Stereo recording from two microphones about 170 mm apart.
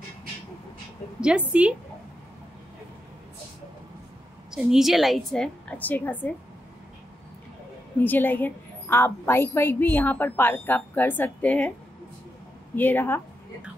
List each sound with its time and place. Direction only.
1.5 s a woman's voice: 5° right (ahead or behind)
4.5 s a woman's voice: 5° right (ahead or behind)
8.0 s a woman's voice: 10° left (ahead or behind)
12.7 s a woman's voice: 10° left (ahead or behind)